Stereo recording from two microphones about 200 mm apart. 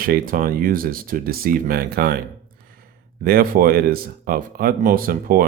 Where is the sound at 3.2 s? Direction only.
50° right (ahead or behind).